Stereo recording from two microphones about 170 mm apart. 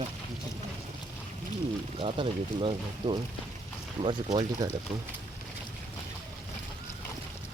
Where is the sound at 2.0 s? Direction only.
30° right (ahead or behind).